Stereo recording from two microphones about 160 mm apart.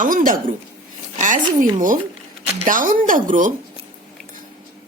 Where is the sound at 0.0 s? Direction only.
60° right (ahead or behind).